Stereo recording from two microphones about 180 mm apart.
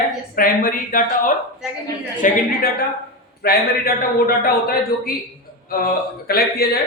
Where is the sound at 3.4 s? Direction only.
55° left (ahead or behind).